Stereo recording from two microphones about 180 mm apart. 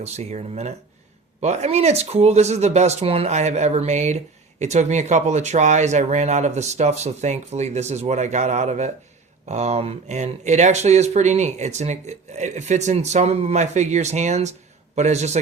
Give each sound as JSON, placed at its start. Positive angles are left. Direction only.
{"t": 0.0, "sound": "speech", "side_deg": -40}